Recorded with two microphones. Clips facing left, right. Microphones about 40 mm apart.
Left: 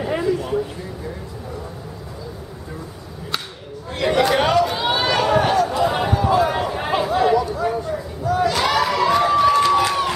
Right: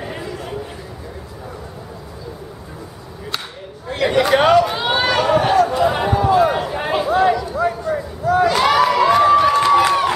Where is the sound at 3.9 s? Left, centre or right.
Centre.